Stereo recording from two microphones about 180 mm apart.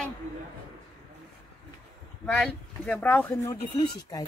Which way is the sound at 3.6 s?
25° left (ahead or behind).